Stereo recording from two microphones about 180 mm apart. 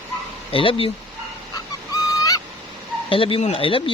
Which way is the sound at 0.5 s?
30° left (ahead or behind).